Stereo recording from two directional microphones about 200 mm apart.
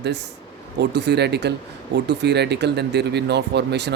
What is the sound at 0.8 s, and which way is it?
Speech, 55° right (ahead or behind).